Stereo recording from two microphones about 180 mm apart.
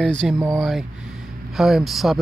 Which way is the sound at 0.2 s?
5° right (ahead or behind).